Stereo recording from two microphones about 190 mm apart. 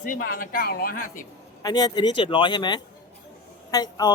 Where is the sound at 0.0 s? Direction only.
45° left (ahead or behind).